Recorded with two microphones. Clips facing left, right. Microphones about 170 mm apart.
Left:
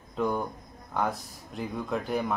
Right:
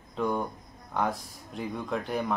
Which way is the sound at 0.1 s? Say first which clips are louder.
Left 1 dB; centre (ahead or behind).